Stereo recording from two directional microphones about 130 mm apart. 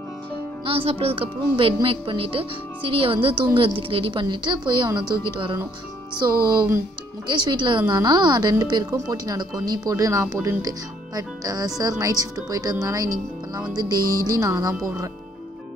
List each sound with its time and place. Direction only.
0.7 s a woman's voice: 45° right (ahead or behind)
7.2 s a woman's voice: 35° right (ahead or behind)